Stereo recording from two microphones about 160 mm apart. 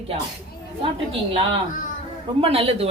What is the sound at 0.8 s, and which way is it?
Speech, 35° right (ahead or behind).